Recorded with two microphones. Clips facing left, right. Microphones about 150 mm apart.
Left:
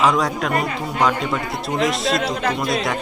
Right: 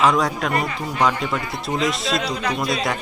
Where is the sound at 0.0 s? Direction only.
Centre (ahead or behind).